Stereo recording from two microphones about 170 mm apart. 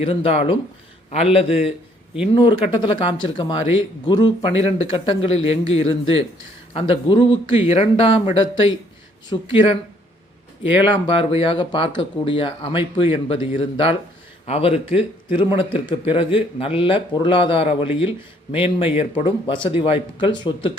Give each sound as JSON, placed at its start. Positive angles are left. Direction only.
{"t": 0.0, "sound": "speech", "side_deg": 35}
{"t": 10.9, "sound": "speech", "side_deg": 30}